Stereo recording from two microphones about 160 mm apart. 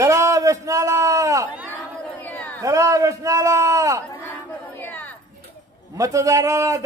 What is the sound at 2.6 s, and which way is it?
Speech, 20° right (ahead or behind).